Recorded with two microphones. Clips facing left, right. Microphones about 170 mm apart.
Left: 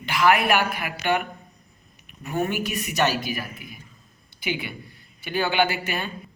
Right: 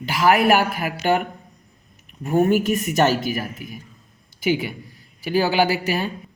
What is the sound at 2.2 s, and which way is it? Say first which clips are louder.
A woman's voice: right 8 dB; 45° right (ahead or behind).